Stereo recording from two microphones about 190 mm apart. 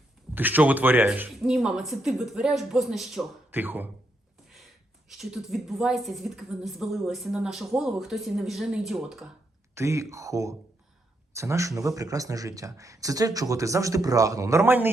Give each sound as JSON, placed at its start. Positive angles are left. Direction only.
{"t": 0.3, "sound": "a woman's voice", "side_deg": -10}
{"t": 5.0, "sound": "a woman's voice", "side_deg": 0}
{"t": 9.7, "sound": "speech", "side_deg": -15}